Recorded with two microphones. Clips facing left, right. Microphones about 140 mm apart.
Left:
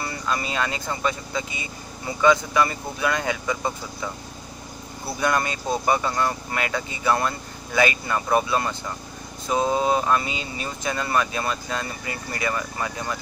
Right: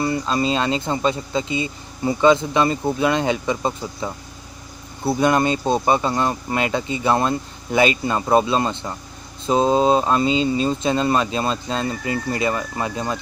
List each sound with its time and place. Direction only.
0.0 s speech: 25° right (ahead or behind)